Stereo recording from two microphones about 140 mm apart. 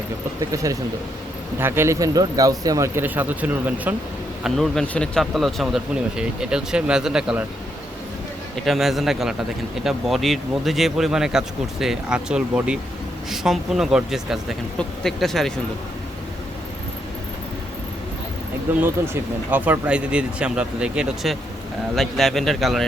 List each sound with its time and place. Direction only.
0.5 s speech: 25° right (ahead or behind)
4.4 s speech: centre (ahead or behind)
8.6 s speech: centre (ahead or behind)
18.8 s speech: 15° right (ahead or behind); by 22.9 s centre (ahead or behind)